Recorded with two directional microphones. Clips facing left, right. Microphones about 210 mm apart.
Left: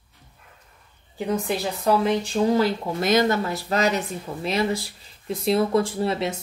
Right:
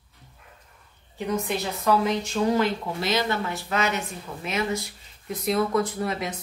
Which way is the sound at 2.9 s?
50° left (ahead or behind).